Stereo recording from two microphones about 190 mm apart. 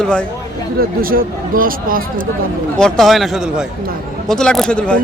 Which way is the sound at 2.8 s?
Centre (ahead or behind).